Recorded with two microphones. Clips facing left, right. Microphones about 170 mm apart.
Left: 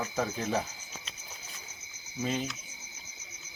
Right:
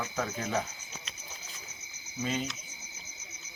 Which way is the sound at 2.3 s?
Centre (ahead or behind).